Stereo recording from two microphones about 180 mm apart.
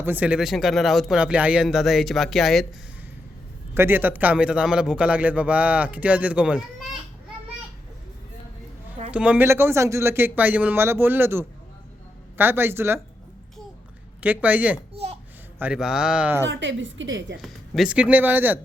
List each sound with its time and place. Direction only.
0.0 s speech: 10° right (ahead or behind)
3.8 s a man's voice: 10° right (ahead or behind)
9.1 s a man's voice: 5° right (ahead or behind)
14.2 s a man's voice: 10° right (ahead or behind)
14.9 s a sound: 35° right (ahead or behind)
15.5 s speech: 5° right (ahead or behind)
16.5 s a woman's voice: 90° right
17.4 s a man's voice: 5° right (ahead or behind)